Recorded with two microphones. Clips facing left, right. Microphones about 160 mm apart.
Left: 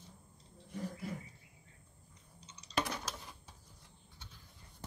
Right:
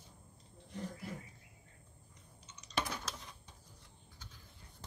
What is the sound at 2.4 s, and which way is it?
Typing, 30° left (ahead or behind).